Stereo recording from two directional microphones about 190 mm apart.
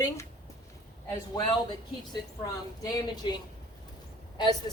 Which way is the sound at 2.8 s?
20° left (ahead or behind).